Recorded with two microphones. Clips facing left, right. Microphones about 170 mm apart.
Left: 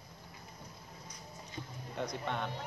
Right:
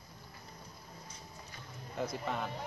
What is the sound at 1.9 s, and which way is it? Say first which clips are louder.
Speech: right 1 dB; 5° right (ahead or behind).